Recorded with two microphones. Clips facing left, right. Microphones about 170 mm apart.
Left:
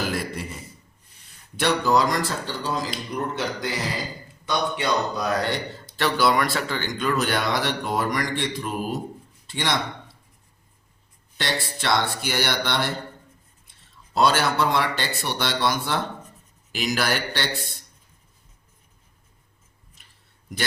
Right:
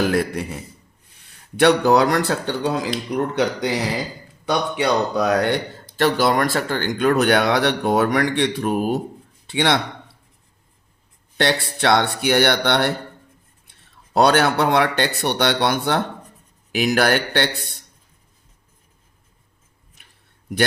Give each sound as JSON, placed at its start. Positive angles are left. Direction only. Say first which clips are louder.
{"t": 0.0, "sound": "speech", "louder": "right 8 dB", "side_deg": -60}
{"t": 11.8, "sound": "speech", "louder": "right 6 dB", "side_deg": -65}